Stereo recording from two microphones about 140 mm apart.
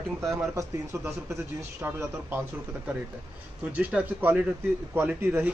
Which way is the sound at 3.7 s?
10° right (ahead or behind).